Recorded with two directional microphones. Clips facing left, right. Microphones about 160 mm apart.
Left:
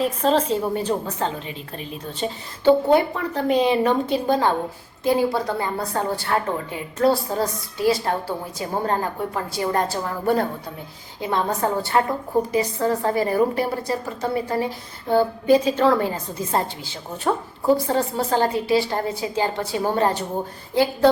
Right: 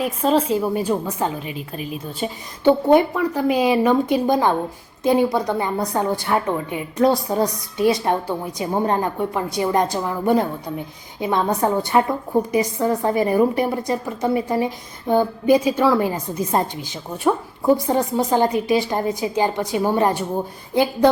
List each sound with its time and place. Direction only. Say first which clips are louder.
0.0 s a woman's voice: right 1 dB; 10° right (ahead or behind)